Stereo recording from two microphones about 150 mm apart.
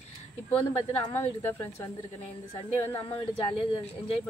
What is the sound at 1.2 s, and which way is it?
Speech, 15° left (ahead or behind).